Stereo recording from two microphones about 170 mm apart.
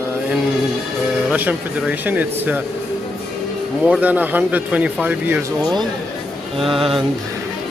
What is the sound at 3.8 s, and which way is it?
Speech, 10° right (ahead or behind).